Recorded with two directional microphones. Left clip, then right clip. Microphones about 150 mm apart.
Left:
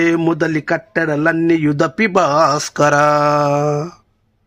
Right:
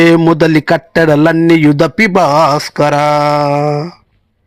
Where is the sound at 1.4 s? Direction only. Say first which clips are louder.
Right 6 dB; 35° right (ahead or behind); by 3.9 s 10° right (ahead or behind).